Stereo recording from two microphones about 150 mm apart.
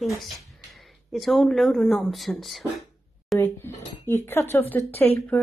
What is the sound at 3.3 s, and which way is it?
Speech, 15° left (ahead or behind).